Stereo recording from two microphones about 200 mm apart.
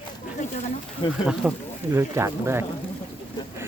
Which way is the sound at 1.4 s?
5° right (ahead or behind).